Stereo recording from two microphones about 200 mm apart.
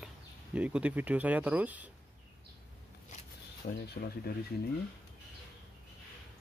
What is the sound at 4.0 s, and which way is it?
Speech, 50° left (ahead or behind).